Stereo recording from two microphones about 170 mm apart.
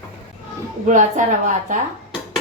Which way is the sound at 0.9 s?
45° right (ahead or behind).